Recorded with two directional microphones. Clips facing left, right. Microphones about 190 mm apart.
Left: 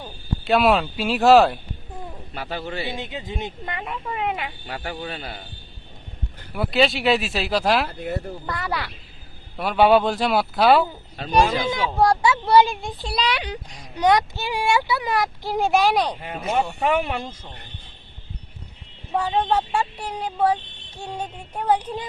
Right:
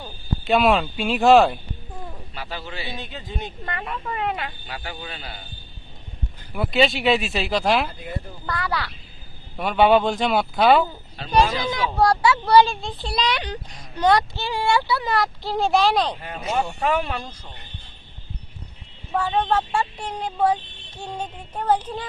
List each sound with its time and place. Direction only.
0.0 s speech: centre (ahead or behind)
2.3 s speech: 50° left (ahead or behind)
2.9 s speech: 20° left (ahead or behind)
4.6 s speech: 45° left (ahead or behind)
6.5 s speech: centre (ahead or behind)
7.9 s speech: 65° left (ahead or behind)
8.4 s speech: 20° left (ahead or behind)
9.6 s speech: centre (ahead or behind)
11.3 s speech: 10° left (ahead or behind)
11.5 s speech: 25° left (ahead or behind)
11.8 s speech: 10° left (ahead or behind)
16.8 s speech: 15° left (ahead or behind)
19.1 s speech: 15° left (ahead or behind)